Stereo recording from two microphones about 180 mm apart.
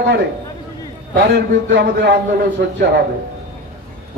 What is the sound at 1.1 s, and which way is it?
A man's voice, 75° right (ahead or behind).